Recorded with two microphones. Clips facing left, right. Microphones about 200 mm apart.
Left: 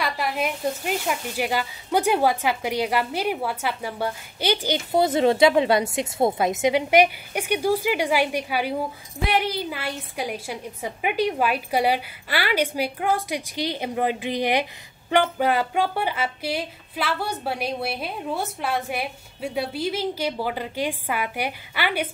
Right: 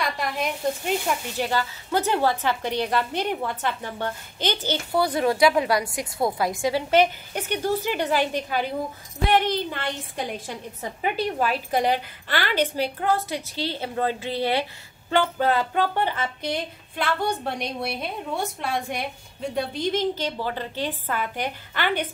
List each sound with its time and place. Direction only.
0.0 s a woman's voice: 5° left (ahead or behind)
4.9 s a woman's voice: 25° left (ahead or behind)